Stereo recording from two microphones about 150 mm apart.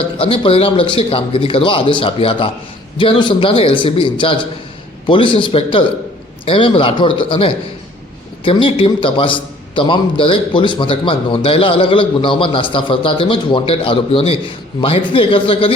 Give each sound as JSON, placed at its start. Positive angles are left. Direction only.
{"t": 0.2, "sound": "a man's voice", "side_deg": 40}